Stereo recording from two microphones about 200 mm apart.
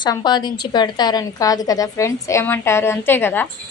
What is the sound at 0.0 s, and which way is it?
A woman's voice, 20° left (ahead or behind).